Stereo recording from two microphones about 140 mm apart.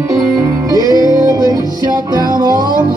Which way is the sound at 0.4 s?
25° right (ahead or behind).